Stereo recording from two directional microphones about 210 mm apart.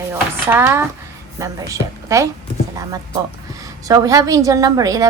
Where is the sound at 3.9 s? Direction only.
15° right (ahead or behind).